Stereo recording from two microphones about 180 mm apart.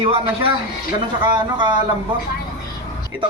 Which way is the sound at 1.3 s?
25° right (ahead or behind).